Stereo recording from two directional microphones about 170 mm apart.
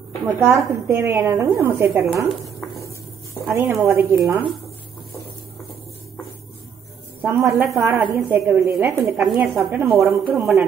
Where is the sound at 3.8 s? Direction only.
15° right (ahead or behind).